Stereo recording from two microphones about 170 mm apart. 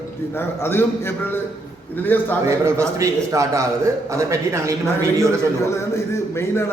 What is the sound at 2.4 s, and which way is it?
A man's voice, 15° right (ahead or behind).